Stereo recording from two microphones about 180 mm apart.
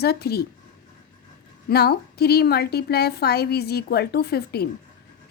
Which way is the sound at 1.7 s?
60° left (ahead or behind).